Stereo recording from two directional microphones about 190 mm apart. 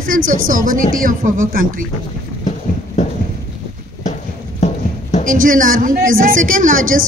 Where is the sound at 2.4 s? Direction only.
40° left (ahead or behind).